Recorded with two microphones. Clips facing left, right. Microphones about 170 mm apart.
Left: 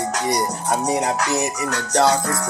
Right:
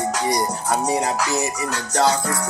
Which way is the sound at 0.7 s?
20° left (ahead or behind).